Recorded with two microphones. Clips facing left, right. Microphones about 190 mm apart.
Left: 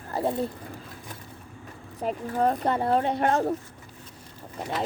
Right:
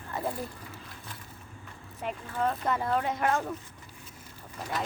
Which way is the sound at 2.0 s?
35° left (ahead or behind).